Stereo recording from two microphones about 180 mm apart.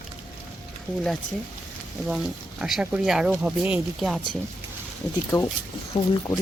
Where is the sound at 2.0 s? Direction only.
Centre (ahead or behind).